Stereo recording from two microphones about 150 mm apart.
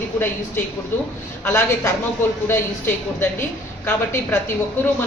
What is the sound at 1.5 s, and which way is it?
A woman's voice, 20° left (ahead or behind).